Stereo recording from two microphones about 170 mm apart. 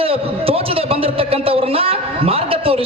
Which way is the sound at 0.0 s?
35° right (ahead or behind).